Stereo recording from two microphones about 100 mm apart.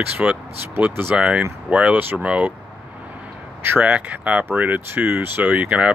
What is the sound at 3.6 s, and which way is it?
Speech, 15° right (ahead or behind).